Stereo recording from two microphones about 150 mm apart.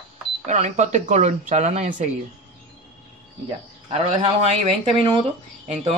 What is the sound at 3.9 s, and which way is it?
Speech, 45° right (ahead or behind).